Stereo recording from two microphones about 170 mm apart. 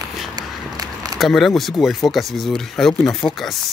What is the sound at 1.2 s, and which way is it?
Speech, centre (ahead or behind).